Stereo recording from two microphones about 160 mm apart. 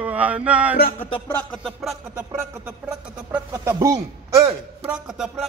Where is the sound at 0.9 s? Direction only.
35° left (ahead or behind).